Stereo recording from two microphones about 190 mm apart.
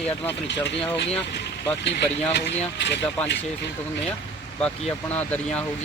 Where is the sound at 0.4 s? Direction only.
70° left (ahead or behind).